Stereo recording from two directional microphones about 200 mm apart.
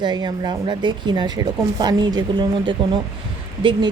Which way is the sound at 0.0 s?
20° right (ahead or behind).